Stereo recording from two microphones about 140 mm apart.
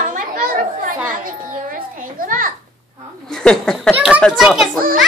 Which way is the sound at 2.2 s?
75° right (ahead or behind).